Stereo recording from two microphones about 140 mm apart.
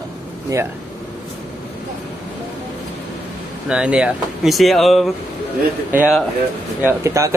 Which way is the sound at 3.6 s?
5° right (ahead or behind).